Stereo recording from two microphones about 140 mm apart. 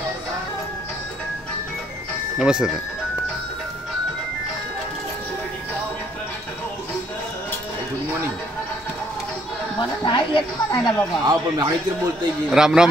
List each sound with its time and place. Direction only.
2.3 s speech: 5° right (ahead or behind)
9.8 s a sound: 35° left (ahead or behind)
11.2 s a man's voice: 30° right (ahead or behind)
12.4 s speech: 5° right (ahead or behind)